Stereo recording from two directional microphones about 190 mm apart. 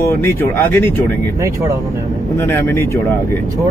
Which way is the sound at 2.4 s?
15° left (ahead or behind).